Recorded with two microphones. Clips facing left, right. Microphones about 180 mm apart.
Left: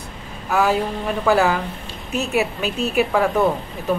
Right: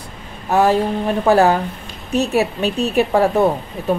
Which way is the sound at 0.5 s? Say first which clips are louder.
Right 4 dB; 35° right (ahead or behind).